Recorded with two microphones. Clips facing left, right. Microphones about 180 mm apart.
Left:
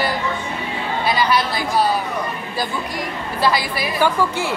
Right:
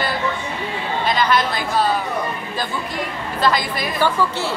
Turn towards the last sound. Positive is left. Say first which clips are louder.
# left 1 dB
turn(degrees=15)  # may be behind; listen again after turning